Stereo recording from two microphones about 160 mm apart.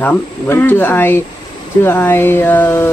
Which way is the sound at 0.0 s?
10° left (ahead or behind).